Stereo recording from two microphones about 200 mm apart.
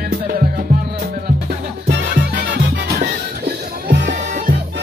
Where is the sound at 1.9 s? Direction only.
60° right (ahead or behind).